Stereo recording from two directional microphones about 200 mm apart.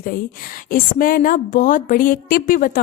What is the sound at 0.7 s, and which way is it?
A woman's voice, 45° left (ahead or behind).